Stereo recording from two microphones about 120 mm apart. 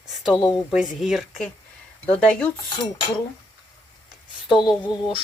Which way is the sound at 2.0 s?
10° left (ahead or behind).